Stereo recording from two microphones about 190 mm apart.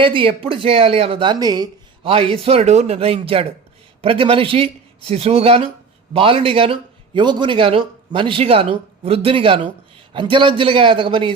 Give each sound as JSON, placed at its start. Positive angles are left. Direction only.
{"t": 0.0, "sound": "speech", "side_deg": -25}